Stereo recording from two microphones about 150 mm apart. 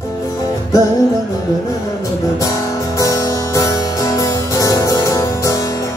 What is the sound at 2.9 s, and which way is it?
Music, 25° left (ahead or behind).